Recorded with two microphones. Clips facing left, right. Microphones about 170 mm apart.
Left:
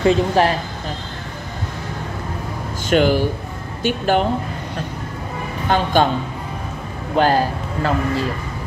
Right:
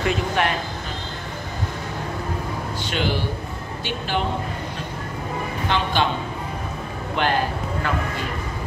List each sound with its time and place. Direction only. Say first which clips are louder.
0.0 s a woman's voice: left 7 dB; 35° left (ahead or behind)
2.9 s speech: left 10 dB; 45° left (ahead or behind)
5.7 s speech: left 5 dB; 45° left (ahead or behind)
7.2 s a man's voice: left 6 dB; 35° left (ahead or behind)